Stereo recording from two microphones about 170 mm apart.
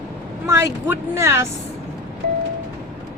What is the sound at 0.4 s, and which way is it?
A woman's voice, 15° right (ahead or behind).